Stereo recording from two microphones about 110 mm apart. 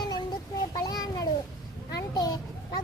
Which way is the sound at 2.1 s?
35° left (ahead or behind).